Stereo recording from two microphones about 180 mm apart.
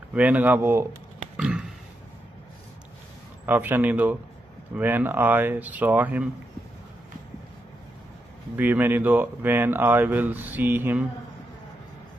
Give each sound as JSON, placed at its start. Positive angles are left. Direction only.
{"t": 0.1, "sound": "speech", "side_deg": -10}
{"t": 1.3, "sound": "a sound", "side_deg": -5}
{"t": 3.4, "sound": "speech", "side_deg": -10}
{"t": 8.5, "sound": "speech", "side_deg": -10}